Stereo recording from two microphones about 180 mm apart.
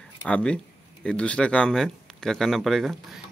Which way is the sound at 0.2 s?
5° left (ahead or behind).